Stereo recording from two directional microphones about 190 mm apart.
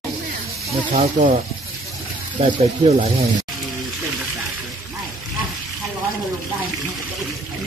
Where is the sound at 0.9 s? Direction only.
35° right (ahead or behind).